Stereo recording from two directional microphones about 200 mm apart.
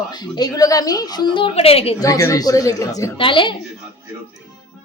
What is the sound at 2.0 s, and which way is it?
A woman's voice, 15° left (ahead or behind).